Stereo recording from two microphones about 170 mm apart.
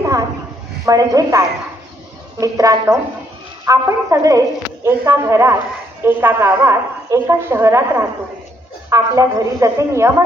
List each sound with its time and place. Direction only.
0.8 s speech: 20° right (ahead or behind)
2.4 s a woman's voice: 20° right (ahead or behind)